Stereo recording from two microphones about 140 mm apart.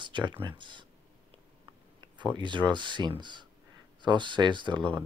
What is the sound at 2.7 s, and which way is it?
Speech, 35° right (ahead or behind).